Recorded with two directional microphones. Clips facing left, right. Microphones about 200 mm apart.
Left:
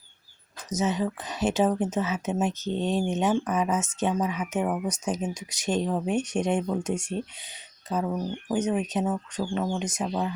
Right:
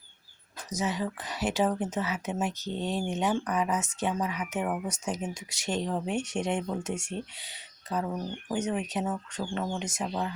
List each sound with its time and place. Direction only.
0.7 s speech: 20° left (ahead or behind)